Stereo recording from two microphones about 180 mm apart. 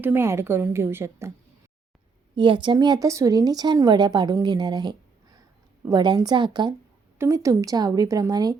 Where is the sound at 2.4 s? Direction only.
25° right (ahead or behind).